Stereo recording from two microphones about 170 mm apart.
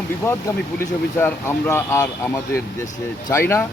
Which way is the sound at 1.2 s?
10° left (ahead or behind).